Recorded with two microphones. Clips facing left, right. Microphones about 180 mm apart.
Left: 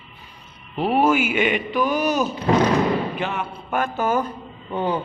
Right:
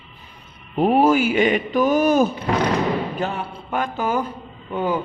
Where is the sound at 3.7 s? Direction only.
15° right (ahead or behind).